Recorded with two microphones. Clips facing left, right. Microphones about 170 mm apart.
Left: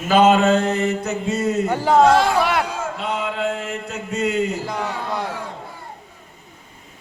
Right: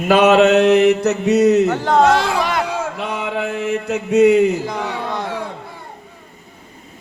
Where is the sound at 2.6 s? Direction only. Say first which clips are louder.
Right 3 dB; 70° right (ahead or behind).